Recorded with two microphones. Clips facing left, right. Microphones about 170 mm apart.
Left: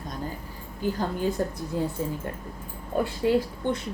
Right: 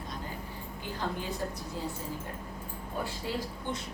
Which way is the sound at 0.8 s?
45° left (ahead or behind).